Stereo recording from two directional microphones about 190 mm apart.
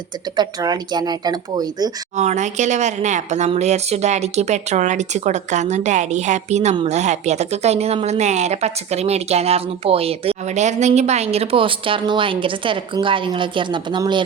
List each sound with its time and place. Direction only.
0.3 s speech: 20° right (ahead or behind)
2.1 s speech: 40° right (ahead or behind)